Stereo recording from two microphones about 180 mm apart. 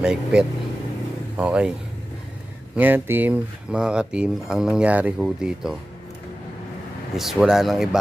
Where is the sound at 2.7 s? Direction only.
10° right (ahead or behind).